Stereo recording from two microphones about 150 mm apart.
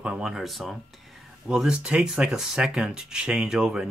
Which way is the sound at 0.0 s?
5° right (ahead or behind).